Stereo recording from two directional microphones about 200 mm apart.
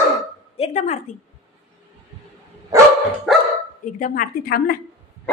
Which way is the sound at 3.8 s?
45° left (ahead or behind).